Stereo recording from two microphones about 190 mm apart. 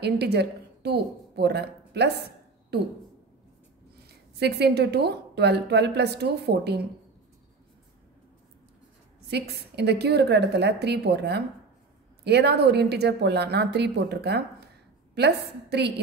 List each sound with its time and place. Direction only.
0.0 s a woman's voice: 60° right (ahead or behind)
4.1 s a woman's voice: 60° right (ahead or behind)
9.3 s a woman's voice: 60° right (ahead or behind)